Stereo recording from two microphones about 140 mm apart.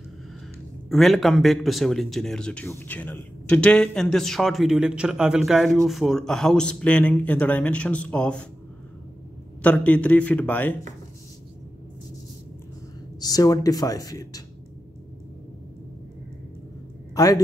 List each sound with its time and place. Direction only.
0.8 s speech: centre (ahead or behind)
9.6 s speech: 10° left (ahead or behind)
13.2 s speech: 25° left (ahead or behind)
17.1 s a man's voice: 25° left (ahead or behind)